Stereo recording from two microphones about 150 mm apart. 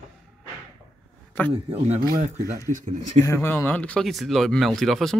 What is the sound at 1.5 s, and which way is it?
Speech, 40° right (ahead or behind).